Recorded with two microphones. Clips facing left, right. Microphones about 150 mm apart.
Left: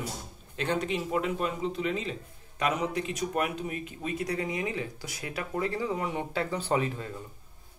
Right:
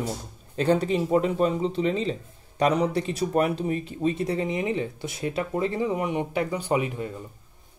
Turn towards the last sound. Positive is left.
turn(degrees=-15)  # may be behind; listen again after turning